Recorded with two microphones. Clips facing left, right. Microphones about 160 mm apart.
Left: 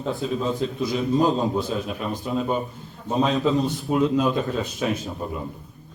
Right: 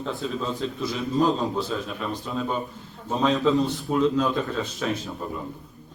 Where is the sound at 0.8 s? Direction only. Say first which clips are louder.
Left 2 dB; 15° left (ahead or behind).